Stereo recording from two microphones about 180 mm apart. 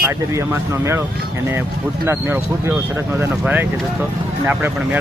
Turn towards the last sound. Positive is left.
turn(degrees=-10)  # may be behind; listen again after turning